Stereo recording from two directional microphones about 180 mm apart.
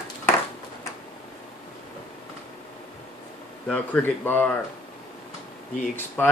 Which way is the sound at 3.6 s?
5° left (ahead or behind).